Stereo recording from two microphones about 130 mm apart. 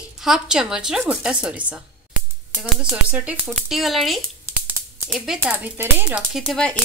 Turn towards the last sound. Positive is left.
turn(degrees=0)  # may be behind; listen again after turning